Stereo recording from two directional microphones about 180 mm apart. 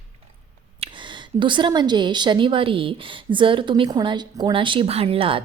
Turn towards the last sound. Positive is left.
turn(degrees=-30)  # may be behind; listen again after turning